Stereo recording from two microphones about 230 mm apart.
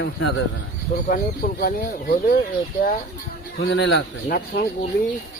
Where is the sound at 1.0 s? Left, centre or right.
Left.